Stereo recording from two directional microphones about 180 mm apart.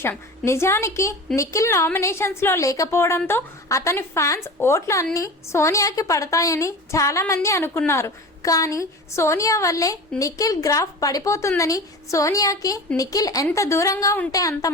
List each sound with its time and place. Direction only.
0.0 s a woman's voice: 15° left (ahead or behind)